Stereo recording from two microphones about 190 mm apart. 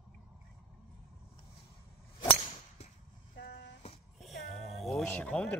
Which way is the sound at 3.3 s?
65° left (ahead or behind).